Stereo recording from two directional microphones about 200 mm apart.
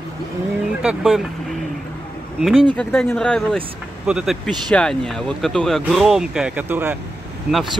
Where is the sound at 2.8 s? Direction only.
10° left (ahead or behind).